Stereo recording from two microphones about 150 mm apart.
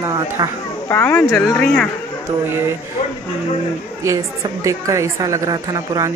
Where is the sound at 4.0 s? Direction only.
20° right (ahead or behind).